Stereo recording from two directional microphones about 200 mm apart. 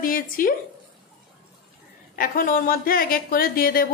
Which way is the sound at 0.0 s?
45° left (ahead or behind).